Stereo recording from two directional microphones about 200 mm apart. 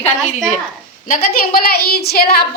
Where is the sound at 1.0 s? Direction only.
45° left (ahead or behind).